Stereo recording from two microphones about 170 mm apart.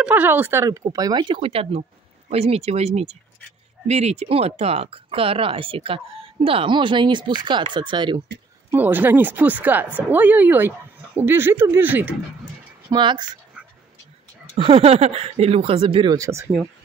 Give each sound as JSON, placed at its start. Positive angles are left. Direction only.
{"t": 0.0, "sound": "speech", "side_deg": -10}
{"t": 8.7, "sound": "speech", "side_deg": -10}
{"t": 12.9, "sound": "speech", "side_deg": -25}
{"t": 14.6, "sound": "speech", "side_deg": -35}
{"t": 16.2, "sound": "speech", "side_deg": -15}